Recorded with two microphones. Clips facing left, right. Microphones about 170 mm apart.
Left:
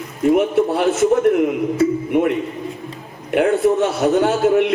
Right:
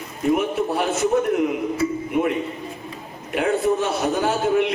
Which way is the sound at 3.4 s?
70° left (ahead or behind).